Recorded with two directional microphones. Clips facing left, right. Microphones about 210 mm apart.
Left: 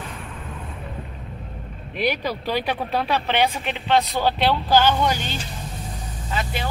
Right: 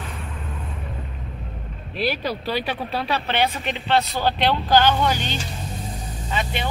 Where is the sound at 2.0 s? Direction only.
15° left (ahead or behind).